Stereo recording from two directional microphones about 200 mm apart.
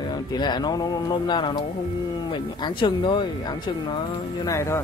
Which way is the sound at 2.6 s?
25° left (ahead or behind).